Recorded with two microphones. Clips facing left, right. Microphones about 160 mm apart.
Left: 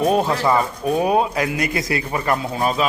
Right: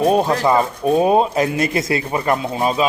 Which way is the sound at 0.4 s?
25° right (ahead or behind).